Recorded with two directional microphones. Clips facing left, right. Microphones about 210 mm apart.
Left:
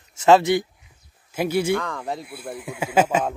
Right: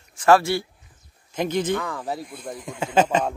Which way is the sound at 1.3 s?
10° left (ahead or behind).